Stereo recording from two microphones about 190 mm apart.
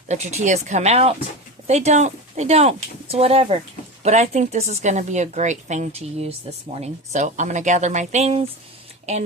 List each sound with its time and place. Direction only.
0.1 s a woman's voice: 35° right (ahead or behind)